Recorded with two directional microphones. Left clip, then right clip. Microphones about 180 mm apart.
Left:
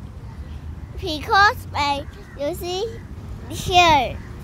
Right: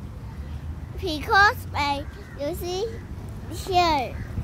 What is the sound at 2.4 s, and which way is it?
A child's voice, 40° left (ahead or behind).